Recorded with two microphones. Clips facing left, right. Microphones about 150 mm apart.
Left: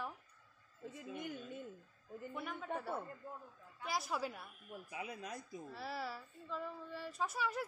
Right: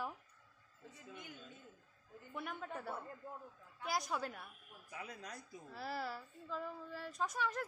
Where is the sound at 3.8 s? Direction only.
Centre (ahead or behind).